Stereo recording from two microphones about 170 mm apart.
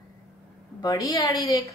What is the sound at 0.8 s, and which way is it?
Speech, 20° left (ahead or behind).